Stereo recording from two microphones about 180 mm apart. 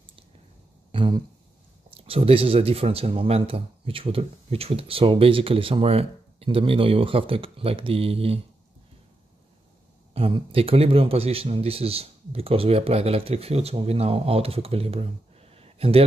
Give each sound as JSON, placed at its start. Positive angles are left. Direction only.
{"t": 0.9, "sound": "a sound", "side_deg": -30}
{"t": 1.9, "sound": "speech", "side_deg": -30}
{"t": 10.1, "sound": "speech", "side_deg": -30}